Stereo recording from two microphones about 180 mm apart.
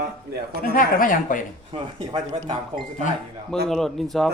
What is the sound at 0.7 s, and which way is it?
Speech, 50° left (ahead or behind).